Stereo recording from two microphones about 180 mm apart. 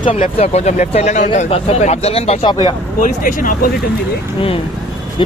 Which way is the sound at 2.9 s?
50° left (ahead or behind).